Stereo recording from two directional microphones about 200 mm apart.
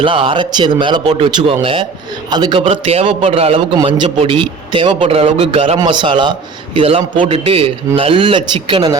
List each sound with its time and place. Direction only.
0.0 s a man's voice: 25° right (ahead or behind)